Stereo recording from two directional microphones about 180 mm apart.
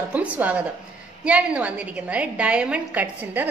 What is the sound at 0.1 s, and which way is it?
A woman's voice, 10° right (ahead or behind).